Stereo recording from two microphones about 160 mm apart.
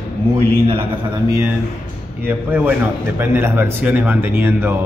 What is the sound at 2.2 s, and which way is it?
A man's voice, 10° right (ahead or behind).